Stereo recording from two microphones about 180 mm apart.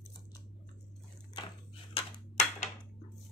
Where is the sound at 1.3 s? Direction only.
30° left (ahead or behind).